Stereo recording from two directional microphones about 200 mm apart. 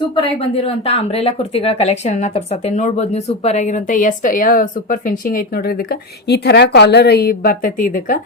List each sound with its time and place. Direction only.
0.2 s speech: 30° left (ahead or behind)